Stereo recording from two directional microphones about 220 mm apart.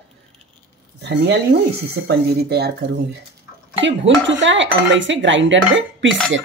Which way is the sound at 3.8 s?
55° right (ahead or behind).